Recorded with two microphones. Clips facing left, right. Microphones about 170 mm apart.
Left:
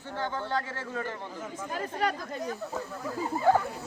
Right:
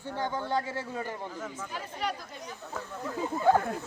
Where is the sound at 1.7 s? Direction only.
50° left (ahead or behind).